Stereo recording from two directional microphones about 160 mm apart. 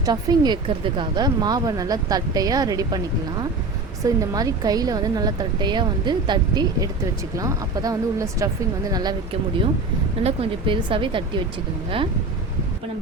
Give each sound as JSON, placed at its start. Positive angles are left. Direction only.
{"t": 0.0, "sound": "a woman's voice", "side_deg": -25}
{"t": 10.2, "sound": "speech", "side_deg": -35}